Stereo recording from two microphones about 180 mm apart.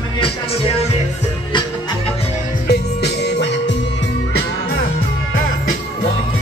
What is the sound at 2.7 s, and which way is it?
Music, 65° left (ahead or behind).